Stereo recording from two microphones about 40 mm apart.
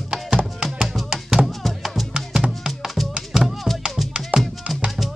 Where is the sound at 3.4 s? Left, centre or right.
Centre.